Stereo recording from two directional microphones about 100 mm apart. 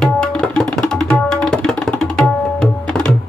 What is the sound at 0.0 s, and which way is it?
Tabla, 5° left (ahead or behind).